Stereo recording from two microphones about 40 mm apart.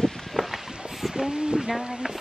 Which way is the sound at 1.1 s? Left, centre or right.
Centre.